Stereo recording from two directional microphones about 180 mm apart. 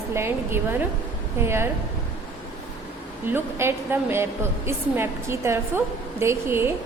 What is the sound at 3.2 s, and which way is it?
A woman's voice, 15° right (ahead or behind).